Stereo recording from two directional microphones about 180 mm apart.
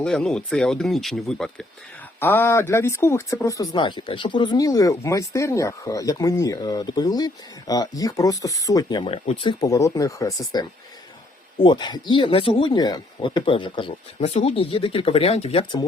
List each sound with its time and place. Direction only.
0.0 s speech: 5° left (ahead or behind); by 15.9 s 30° left (ahead or behind)